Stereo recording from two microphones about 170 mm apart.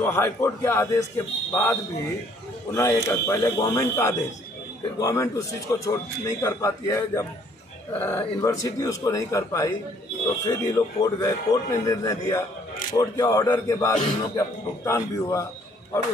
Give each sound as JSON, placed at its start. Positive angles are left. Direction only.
{"t": 0.0, "sound": "a man's voice", "side_deg": 15}